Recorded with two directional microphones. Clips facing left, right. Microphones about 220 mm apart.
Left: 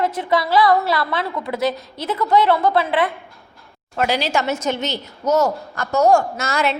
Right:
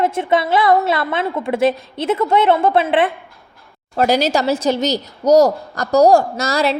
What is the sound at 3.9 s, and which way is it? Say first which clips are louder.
A woman's voice: right 5 dB; 40° right (ahead or behind).